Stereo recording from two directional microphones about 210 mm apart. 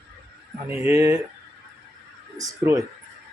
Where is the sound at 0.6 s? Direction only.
10° right (ahead or behind).